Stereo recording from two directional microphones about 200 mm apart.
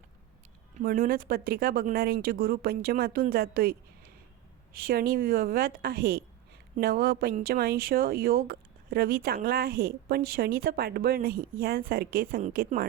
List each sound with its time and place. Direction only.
0.8 s speech: 45° right (ahead or behind)